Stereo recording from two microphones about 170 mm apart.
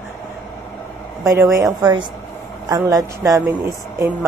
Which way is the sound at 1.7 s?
25° right (ahead or behind).